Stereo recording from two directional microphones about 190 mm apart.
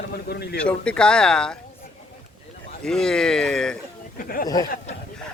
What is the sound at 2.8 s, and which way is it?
Speech, 5° left (ahead or behind).